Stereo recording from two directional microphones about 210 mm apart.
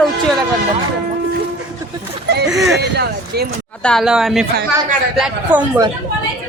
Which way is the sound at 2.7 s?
50° right (ahead or behind).